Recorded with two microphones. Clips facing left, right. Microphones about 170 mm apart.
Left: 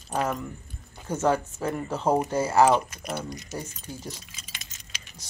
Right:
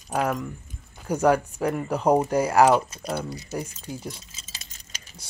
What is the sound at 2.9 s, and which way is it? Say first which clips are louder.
Speech: right 3 dB; 30° right (ahead or behind).